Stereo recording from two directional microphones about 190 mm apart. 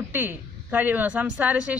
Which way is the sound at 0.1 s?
10° right (ahead or behind).